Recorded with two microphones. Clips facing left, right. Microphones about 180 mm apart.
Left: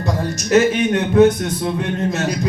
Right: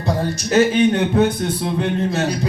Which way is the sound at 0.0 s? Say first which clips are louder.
Right 1 dB; 30° right (ahead or behind).